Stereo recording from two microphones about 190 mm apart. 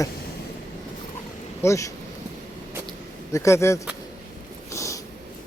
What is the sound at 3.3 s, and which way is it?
Speech, 15° left (ahead or behind).